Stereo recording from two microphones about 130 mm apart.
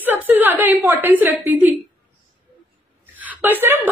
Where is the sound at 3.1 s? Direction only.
15° right (ahead or behind).